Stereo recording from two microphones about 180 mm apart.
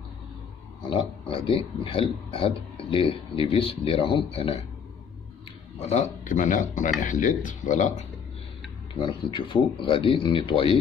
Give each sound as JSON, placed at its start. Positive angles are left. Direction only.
{"t": 1.3, "sound": "speech", "side_deg": 30}
{"t": 5.8, "sound": "speech", "side_deg": 40}
{"t": 9.0, "sound": "speech", "side_deg": 25}